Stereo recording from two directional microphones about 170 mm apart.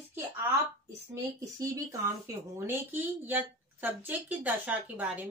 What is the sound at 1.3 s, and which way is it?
Speech, 20° right (ahead or behind).